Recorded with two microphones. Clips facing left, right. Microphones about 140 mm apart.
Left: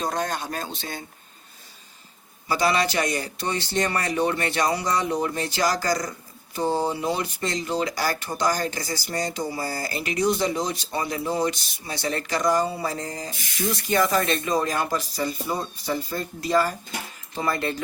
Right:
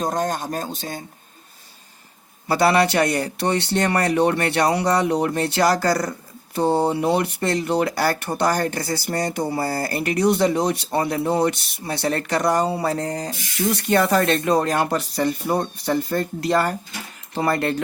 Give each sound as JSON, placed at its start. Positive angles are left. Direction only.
{"t": 0.0, "sound": "speech", "side_deg": -45}
{"t": 2.5, "sound": "speech", "side_deg": -60}